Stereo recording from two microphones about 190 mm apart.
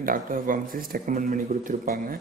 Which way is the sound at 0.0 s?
45° right (ahead or behind).